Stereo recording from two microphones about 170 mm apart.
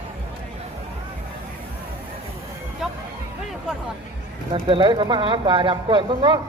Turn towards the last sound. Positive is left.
turn(degrees=-30)  # may be behind; listen again after turning